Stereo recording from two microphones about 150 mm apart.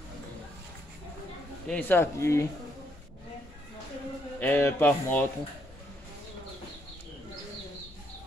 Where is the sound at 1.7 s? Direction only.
10° left (ahead or behind).